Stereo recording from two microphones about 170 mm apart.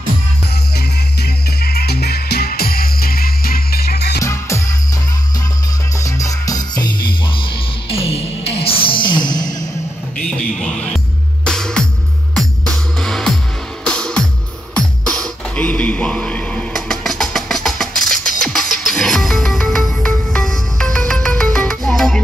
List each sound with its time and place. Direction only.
0.7 s music: 65° left (ahead or behind)
4.2 s music: 15° left (ahead or behind)
5.9 s music: 20° left (ahead or behind)
10.1 s a sound: 5° left (ahead or behind)
11.4 s music: 5° left (ahead or behind)